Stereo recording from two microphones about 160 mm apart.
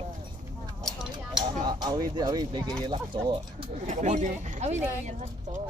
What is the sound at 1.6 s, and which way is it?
Speech, 25° right (ahead or behind).